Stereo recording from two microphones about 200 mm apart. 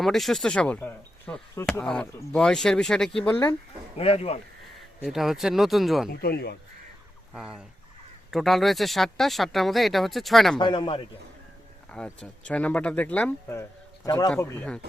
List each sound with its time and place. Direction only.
0.0 s speech: centre (ahead or behind)
3.9 s speech: 30° left (ahead or behind)
5.0 s speech: centre (ahead or behind)
6.1 s speech: 50° left (ahead or behind)
7.3 s speech: 5° right (ahead or behind)
10.6 s speech: 25° left (ahead or behind)
11.9 s speech: 5° left (ahead or behind)